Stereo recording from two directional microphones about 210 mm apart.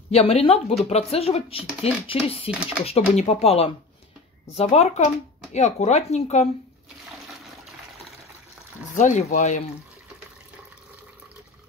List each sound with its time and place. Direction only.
0.1 s speech: 30° left (ahead or behind)
8.9 s speech: 35° left (ahead or behind)